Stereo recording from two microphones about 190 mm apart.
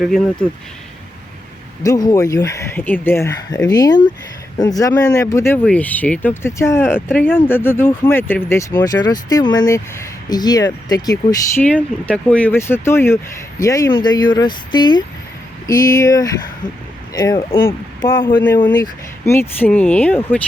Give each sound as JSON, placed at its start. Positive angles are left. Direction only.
{"t": 0.0, "sound": "speech", "side_deg": 5}
{"t": 1.8, "sound": "speech", "side_deg": 20}
{"t": 11.6, "sound": "speech", "side_deg": 5}